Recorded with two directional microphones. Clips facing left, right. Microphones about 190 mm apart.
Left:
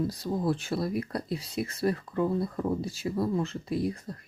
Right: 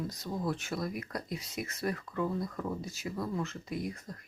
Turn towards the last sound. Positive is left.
turn(degrees=30)  # may be behind; listen again after turning